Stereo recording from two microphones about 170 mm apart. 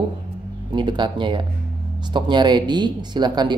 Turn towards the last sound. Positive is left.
turn(degrees=-25)  # may be behind; listen again after turning